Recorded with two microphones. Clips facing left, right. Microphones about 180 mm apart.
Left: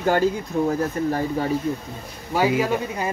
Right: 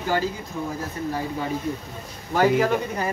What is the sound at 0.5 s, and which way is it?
Speech, 65° left (ahead or behind).